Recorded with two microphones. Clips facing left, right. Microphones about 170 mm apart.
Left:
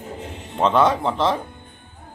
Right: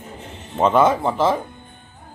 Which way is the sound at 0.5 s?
5° right (ahead or behind).